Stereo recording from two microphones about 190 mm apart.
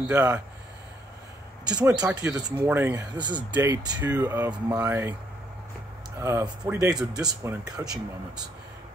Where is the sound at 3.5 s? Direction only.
10° right (ahead or behind).